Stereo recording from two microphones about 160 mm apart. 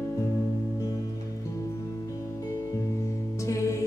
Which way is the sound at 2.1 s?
20° left (ahead or behind).